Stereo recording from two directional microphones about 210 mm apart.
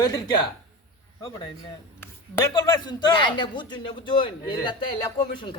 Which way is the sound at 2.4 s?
15° left (ahead or behind).